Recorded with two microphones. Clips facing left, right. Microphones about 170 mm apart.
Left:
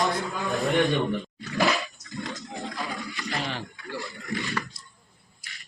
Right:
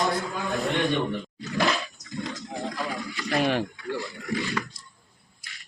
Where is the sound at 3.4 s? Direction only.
65° right (ahead or behind).